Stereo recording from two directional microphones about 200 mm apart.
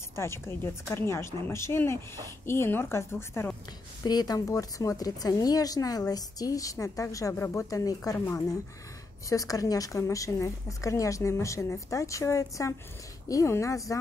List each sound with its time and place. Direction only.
0.1 s speech: 15° left (ahead or behind)